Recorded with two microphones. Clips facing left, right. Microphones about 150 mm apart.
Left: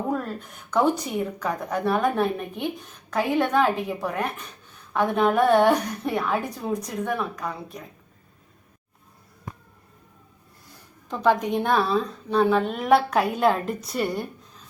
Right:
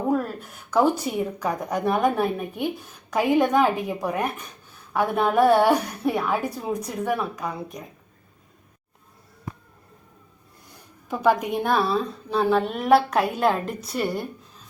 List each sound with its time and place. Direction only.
0.1 s a woman's voice: 5° right (ahead or behind)
11.1 s a woman's voice: 10° right (ahead or behind)